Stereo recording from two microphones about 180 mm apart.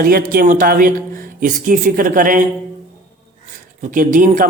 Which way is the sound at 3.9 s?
50° right (ahead or behind).